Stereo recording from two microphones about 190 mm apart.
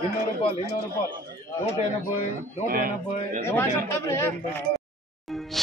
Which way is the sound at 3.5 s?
10° left (ahead or behind).